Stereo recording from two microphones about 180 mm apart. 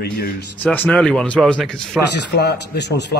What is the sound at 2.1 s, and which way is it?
A man's voice, 70° left (ahead or behind).